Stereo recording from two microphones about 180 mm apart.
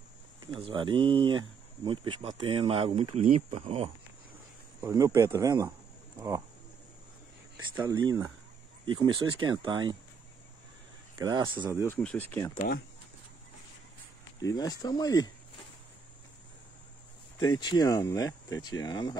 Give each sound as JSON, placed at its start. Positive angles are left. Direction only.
{"t": 0.5, "sound": "speech", "side_deg": -25}
{"t": 4.8, "sound": "speech", "side_deg": -15}
{"t": 7.9, "sound": "speech", "side_deg": -20}
{"t": 11.1, "sound": "speech", "side_deg": -25}
{"t": 11.7, "sound": "speech", "side_deg": 15}
{"t": 12.5, "sound": "speech", "side_deg": 55}
{"t": 14.4, "sound": "speech", "side_deg": 20}
{"t": 17.4, "sound": "speech", "side_deg": 25}